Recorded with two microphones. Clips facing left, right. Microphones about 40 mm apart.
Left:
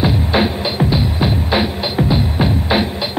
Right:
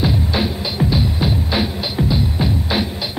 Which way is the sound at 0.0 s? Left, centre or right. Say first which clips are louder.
Left 4 dB; left.